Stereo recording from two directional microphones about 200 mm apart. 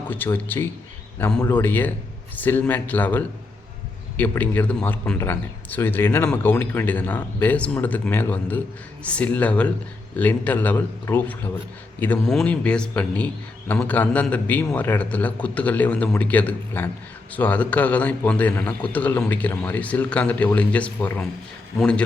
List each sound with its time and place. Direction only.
0.1 s a man's voice: 10° left (ahead or behind)